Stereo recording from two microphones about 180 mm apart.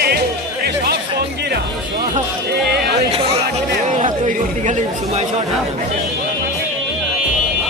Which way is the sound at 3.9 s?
45° right (ahead or behind).